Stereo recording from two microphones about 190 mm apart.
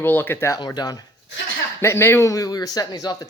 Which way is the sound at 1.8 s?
15° left (ahead or behind).